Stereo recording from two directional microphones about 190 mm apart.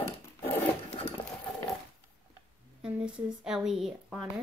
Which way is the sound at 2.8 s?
5° right (ahead or behind).